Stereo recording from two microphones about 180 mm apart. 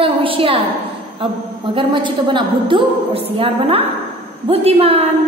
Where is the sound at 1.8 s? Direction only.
25° right (ahead or behind).